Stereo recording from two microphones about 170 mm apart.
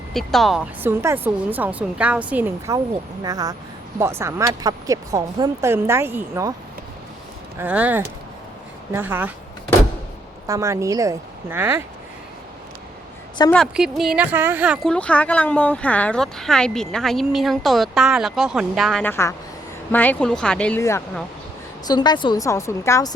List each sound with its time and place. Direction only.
0.1 s speech: centre (ahead or behind)
0.8 s speech: 10° right (ahead or behind)
3.2 s speech: 20° right (ahead or behind)
7.6 s speech: 10° right (ahead or behind)
10.4 s speech: 20° right (ahead or behind)
13.4 s speech: 20° left (ahead or behind)
13.7 s speech: centre (ahead or behind)
14.8 s speech: 5° left (ahead or behind)
19.0 s speech: 15° left (ahead or behind)
21.8 s speech: 25° left (ahead or behind)